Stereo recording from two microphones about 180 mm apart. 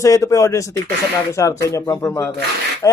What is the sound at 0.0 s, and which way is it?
Speech, 20° left (ahead or behind).